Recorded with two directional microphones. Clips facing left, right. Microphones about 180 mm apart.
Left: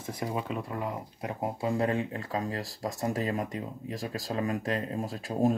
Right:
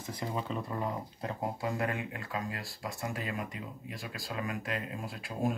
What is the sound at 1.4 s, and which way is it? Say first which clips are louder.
Speech: left 5 dB; 30° left (ahead or behind).